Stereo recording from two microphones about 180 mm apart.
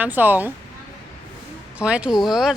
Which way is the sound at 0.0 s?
10° right (ahead or behind).